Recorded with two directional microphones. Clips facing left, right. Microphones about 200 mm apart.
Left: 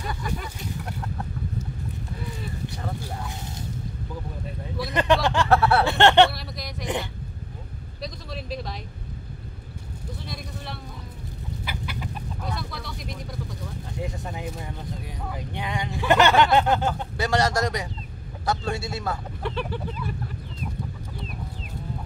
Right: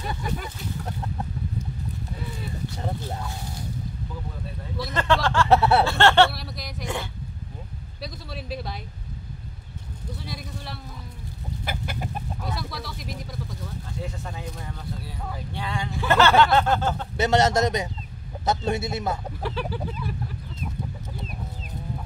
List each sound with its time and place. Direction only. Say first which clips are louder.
0.0 s a sound: right 1 dB; 25° right (ahead or behind)
4.9 s speech: left 1 dB; 15° left (ahead or behind)
5.5 s a man's voice: right 2 dB; 20° right (ahead or behind)
5.9 s speech: left 1 dB; 20° left (ahead or behind)
6.3 s speech: left 1 dB; centre (ahead or behind)
8.0 s a man's voice: left 1 dB; 5° right (ahead or behind)
10.2 s speech: even; centre (ahead or behind)
11.6 s chicken: right 3 dB; 45° right (ahead or behind)
12.4 s speech: left 2 dB; 5° right (ahead or behind)
13.9 s speech: left 3 dB; 15° left (ahead or behind)
17.2 s a man's voice: right 3 dB; 20° right (ahead or behind)
19.4 s speech: left 1 dB; centre (ahead or behind)